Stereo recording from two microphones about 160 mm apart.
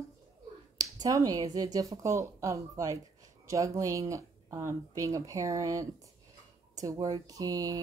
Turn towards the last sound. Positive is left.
turn(degrees=-20)  # may be behind; listen again after turning